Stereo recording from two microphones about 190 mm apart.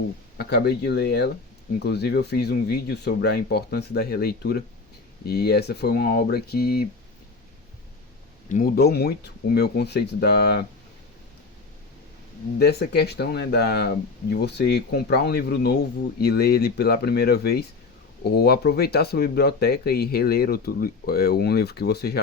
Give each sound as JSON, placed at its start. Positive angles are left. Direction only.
{"t": 0.3, "sound": "speech", "side_deg": 60}
{"t": 8.4, "sound": "speech", "side_deg": 45}
{"t": 12.5, "sound": "speech", "side_deg": 60}